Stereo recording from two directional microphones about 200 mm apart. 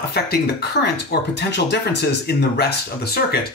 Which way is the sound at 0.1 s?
50° left (ahead or behind).